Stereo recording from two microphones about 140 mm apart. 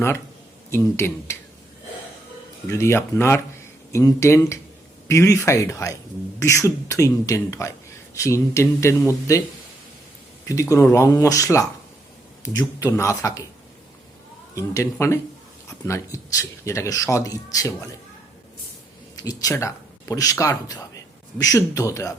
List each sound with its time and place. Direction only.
0.7 s speech: 20° left (ahead or behind)
2.6 s speech: 20° left (ahead or behind)
10.4 s speech: 25° left (ahead or behind)
14.5 s speech: 20° left (ahead or behind)
19.1 s speech: 25° left (ahead or behind)